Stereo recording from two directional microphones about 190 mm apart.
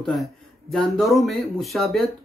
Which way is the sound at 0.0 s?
Centre (ahead or behind).